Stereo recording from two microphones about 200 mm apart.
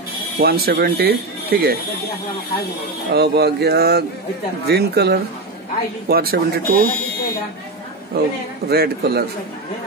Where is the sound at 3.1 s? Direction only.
55° right (ahead or behind).